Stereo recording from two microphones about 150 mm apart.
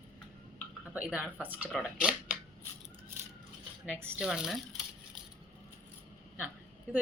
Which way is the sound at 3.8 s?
5° right (ahead or behind).